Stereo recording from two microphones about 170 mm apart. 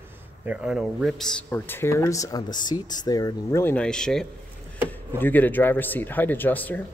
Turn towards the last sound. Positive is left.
turn(degrees=10)  # may be behind; listen again after turning